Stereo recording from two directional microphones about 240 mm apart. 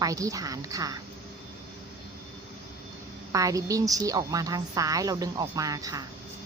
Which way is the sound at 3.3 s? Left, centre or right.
Centre.